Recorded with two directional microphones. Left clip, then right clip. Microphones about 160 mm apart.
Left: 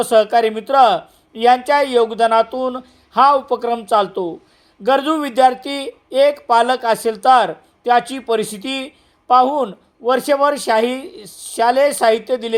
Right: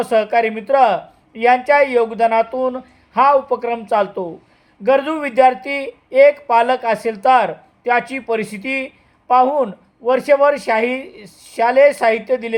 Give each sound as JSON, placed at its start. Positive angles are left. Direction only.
{"t": 0.0, "sound": "speech", "side_deg": 20}